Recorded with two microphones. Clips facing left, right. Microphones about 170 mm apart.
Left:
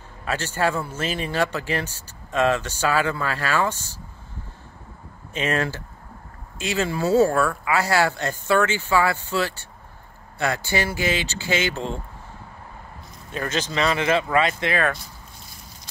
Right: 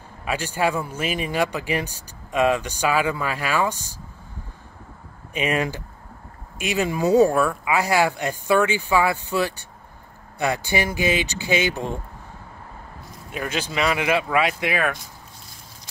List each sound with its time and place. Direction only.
0.2 s a man's voice: 10° right (ahead or behind)
5.3 s a man's voice: 15° right (ahead or behind)
13.3 s a man's voice: 10° right (ahead or behind)